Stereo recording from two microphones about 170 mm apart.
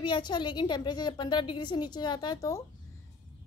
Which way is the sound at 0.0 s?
25° left (ahead or behind).